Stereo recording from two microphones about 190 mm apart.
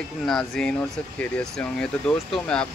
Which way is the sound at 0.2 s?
5° left (ahead or behind).